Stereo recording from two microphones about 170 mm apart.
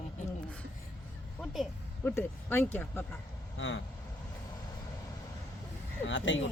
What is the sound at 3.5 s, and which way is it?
Speech, 90° left.